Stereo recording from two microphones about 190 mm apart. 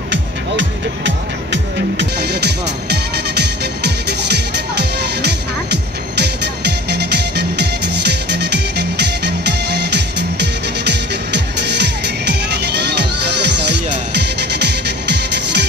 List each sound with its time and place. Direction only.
0.1 s music: 70° right (ahead or behind)